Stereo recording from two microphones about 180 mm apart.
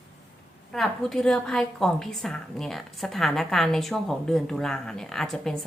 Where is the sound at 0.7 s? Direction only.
Centre (ahead or behind).